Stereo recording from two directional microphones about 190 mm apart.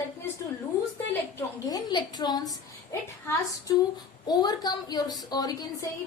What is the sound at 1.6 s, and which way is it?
Speech, 20° left (ahead or behind).